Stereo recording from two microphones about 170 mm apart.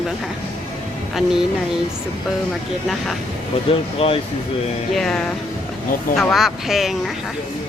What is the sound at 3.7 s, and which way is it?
Speech, 35° left (ahead or behind).